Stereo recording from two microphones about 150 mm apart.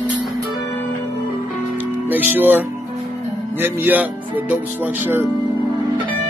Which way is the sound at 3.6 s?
15° right (ahead or behind).